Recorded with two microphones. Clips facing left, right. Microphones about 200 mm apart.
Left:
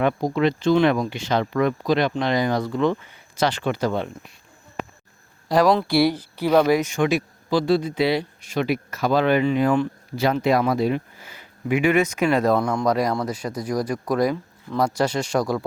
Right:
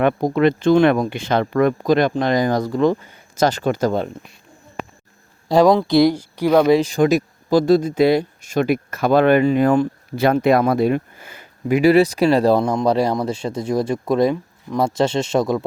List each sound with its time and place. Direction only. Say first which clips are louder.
0.0 s speech: right 4 dB; 55° right (ahead or behind)
5.5 s speech: right 4 dB; 25° right (ahead or behind)
6.7 s speech: right 5 dB; 30° right (ahead or behind); by 11.4 s 50° right (ahead or behind)
11.7 s speech: right 6 dB; 35° right (ahead or behind)